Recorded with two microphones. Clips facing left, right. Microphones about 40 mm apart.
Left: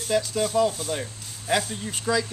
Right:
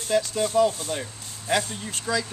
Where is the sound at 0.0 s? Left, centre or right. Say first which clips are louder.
Even; centre.